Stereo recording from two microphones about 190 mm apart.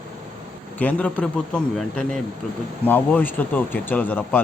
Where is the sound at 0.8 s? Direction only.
5° left (ahead or behind).